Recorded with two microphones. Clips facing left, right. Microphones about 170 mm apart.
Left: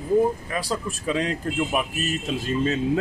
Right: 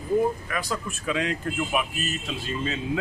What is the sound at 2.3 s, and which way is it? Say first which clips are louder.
Speech: left 8 dB; 45° left (ahead or behind).